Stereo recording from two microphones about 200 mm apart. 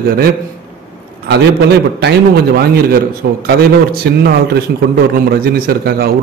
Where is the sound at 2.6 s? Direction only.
50° right (ahead or behind).